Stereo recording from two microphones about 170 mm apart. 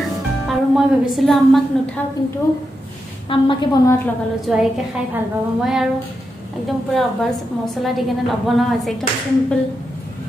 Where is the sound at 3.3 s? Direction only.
30° left (ahead or behind).